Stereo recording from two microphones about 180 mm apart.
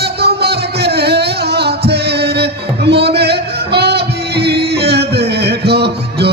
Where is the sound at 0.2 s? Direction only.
65° right (ahead or behind).